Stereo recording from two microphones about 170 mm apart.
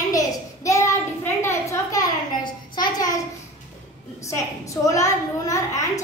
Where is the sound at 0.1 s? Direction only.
20° left (ahead or behind).